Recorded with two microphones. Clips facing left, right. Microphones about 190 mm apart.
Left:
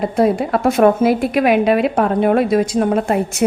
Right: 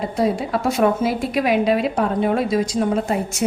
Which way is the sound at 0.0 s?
55° left (ahead or behind).